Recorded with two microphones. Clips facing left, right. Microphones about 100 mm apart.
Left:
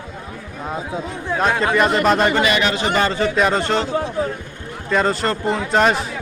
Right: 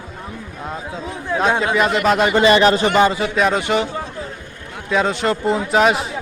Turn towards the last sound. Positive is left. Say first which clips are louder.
# right 1 dB
turn(degrees=-5)  # may be behind; listen again after turning